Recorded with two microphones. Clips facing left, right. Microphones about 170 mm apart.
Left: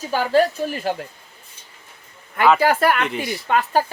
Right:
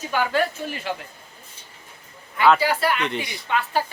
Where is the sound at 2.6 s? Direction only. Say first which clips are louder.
Left 5 dB; 50° left (ahead or behind).